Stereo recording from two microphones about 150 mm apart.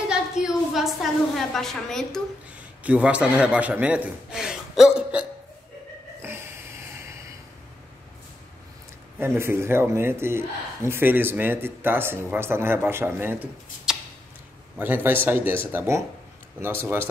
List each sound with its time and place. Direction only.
0.1 s a sound: 5° right (ahead or behind)
1.5 s a woman's voice: centre (ahead or behind)
2.8 s a man's voice: 10° right (ahead or behind)
6.2 s snort: 15° right (ahead or behind)
9.2 s a man's voice: 15° right (ahead or behind)